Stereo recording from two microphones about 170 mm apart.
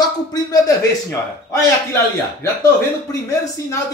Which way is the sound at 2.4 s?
20° left (ahead or behind).